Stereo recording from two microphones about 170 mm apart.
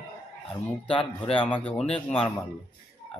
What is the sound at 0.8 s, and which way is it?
Speech, 30° left (ahead or behind).